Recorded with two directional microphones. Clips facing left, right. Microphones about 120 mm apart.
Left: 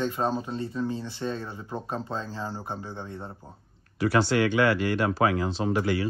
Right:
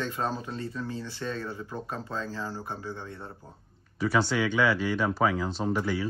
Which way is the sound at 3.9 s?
75° left (ahead or behind).